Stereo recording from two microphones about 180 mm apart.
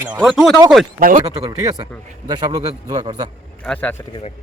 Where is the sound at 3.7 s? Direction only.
10° left (ahead or behind).